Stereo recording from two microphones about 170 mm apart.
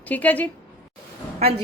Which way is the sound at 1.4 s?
35° right (ahead or behind).